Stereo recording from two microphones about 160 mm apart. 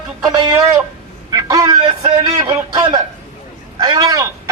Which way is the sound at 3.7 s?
25° right (ahead or behind).